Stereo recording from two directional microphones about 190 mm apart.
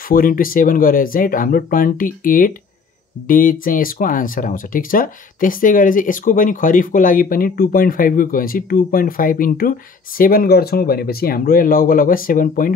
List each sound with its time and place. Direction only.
0.1 s speech: 50° left (ahead or behind)